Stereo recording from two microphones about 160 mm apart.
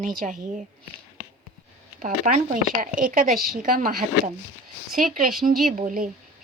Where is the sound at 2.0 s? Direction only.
60° right (ahead or behind).